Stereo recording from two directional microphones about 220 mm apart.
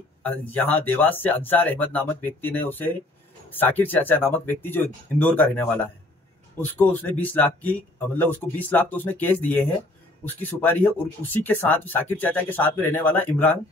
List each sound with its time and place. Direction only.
0.2 s speech: 5° left (ahead or behind)